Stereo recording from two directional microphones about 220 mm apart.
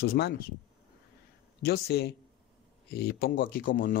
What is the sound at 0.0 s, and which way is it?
Speech, 45° left (ahead or behind).